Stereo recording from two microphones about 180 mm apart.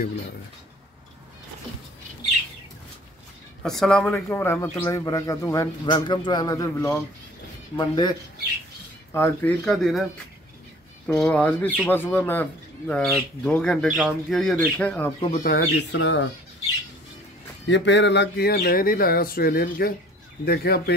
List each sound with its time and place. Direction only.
3.6 s speech: 5° left (ahead or behind); by 8.2 s 20° left (ahead or behind)
9.1 s speech: 10° left (ahead or behind)
11.1 s speech: 5° left (ahead or behind)
15.3 s speech: 50° left (ahead or behind)
15.6 s speech: 85° left
17.6 s speech: 80° left; by 20.9 s 60° left (ahead or behind)